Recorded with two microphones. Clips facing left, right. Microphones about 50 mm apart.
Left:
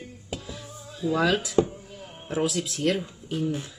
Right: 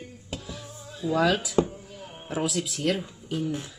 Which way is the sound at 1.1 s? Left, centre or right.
Centre.